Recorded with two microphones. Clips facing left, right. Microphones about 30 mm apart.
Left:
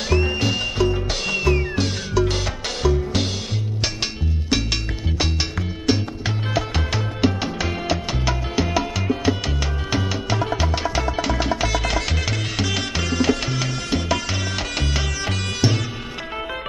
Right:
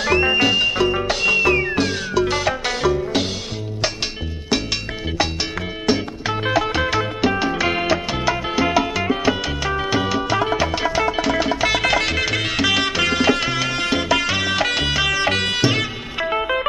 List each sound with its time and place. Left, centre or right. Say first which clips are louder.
0.0 s music: right 5 dB; right
6.4 s music: right 7 dB; right
7.9 s salsa music: right 4 dB; right
8.9 s music: right 3 dB; right
10.6 s salsa music: right 4 dB; right
11.6 s music: right 5 dB; right